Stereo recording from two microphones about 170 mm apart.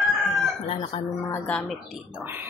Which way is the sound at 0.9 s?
30° left (ahead or behind).